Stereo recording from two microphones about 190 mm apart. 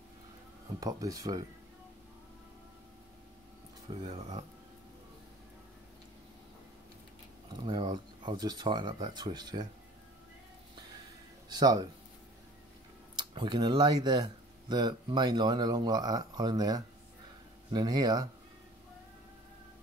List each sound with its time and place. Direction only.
0.7 s speech: 20° right (ahead or behind)
4.1 s speech: 35° right (ahead or behind)
7.6 s speech: 25° right (ahead or behind)
11.4 s speech: 20° right (ahead or behind)
13.3 s speech: 25° right (ahead or behind)